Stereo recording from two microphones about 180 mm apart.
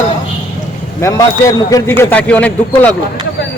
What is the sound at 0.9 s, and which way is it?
A man's voice, 15° left (ahead or behind).